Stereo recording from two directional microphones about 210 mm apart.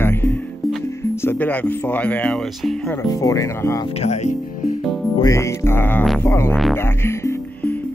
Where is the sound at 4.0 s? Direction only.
35° left (ahead or behind).